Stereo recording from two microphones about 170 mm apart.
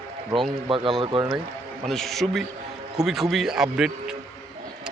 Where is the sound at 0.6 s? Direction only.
30° right (ahead or behind).